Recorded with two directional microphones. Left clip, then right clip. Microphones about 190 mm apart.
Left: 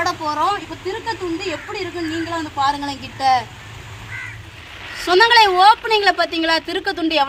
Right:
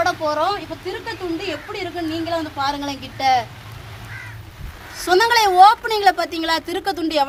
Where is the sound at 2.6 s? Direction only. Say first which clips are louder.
Left 3 dB; 20° right (ahead or behind).